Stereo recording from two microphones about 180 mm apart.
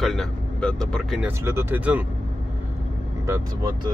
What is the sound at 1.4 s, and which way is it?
Speech, 15° right (ahead or behind).